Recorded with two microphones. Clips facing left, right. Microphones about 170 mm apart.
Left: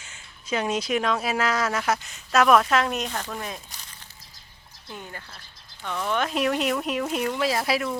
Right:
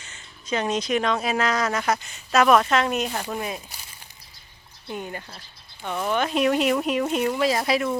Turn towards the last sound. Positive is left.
turn(degrees=0)  # may be behind; listen again after turning